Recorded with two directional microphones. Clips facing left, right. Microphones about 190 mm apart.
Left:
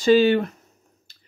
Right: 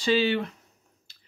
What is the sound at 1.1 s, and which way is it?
Drip, 45° left (ahead or behind).